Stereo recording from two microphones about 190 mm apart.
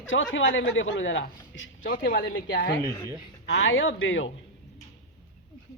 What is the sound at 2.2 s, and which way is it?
Speech, 70° left (ahead or behind).